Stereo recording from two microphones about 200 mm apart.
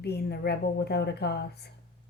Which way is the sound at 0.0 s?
55° left (ahead or behind).